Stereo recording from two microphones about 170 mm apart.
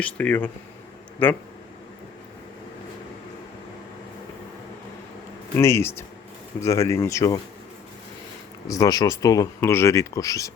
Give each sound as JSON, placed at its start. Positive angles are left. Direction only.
{"t": 0.0, "sound": "speech", "side_deg": 10}
{"t": 5.5, "sound": "speech", "side_deg": 15}
{"t": 8.6, "sound": "speech", "side_deg": 20}